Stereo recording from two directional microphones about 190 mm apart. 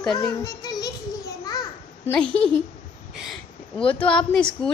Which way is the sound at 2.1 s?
5° left (ahead or behind).